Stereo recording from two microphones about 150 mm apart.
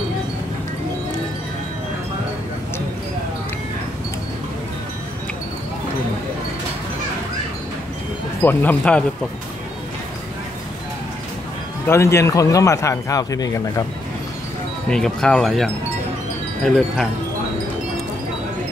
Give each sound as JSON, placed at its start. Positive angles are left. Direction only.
{"t": 8.4, "sound": "speech", "side_deg": 10}
{"t": 11.9, "sound": "speech", "side_deg": 15}
{"t": 14.9, "sound": "speech", "side_deg": 5}